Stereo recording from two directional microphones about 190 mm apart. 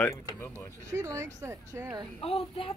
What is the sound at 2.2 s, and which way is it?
Speech, 30° left (ahead or behind).